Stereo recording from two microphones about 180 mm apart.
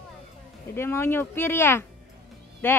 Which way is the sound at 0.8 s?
15° left (ahead or behind).